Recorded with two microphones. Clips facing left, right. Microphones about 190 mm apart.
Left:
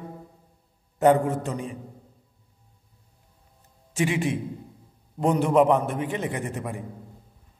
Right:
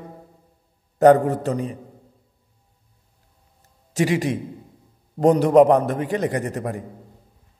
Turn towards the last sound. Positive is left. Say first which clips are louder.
# right 5 dB
turn(degrees=-40)  # may be behind; listen again after turning